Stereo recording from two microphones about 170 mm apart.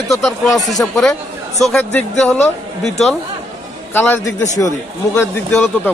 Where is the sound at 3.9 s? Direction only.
10° left (ahead or behind).